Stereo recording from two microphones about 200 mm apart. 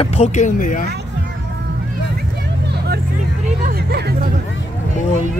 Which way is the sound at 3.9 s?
55° right (ahead or behind).